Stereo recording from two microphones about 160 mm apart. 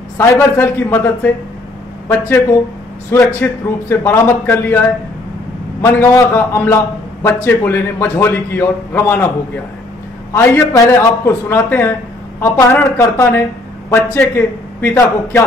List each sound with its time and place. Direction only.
0.2 s a man's voice: 15° left (ahead or behind)
10.3 s a man's voice: 15° left (ahead or behind)